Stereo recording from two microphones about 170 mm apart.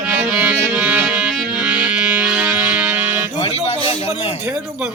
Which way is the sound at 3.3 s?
35° left (ahead or behind).